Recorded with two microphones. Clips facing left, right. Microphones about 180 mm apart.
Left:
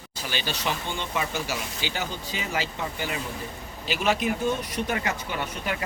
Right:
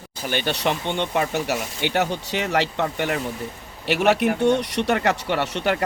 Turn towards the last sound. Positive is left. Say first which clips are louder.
# right 8 dB
turn(degrees=-75)  # may be behind; listen again after turning